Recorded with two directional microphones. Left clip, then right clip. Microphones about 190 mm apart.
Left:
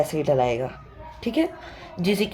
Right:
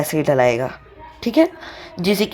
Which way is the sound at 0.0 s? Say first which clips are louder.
Right 5 dB; 25° right (ahead or behind).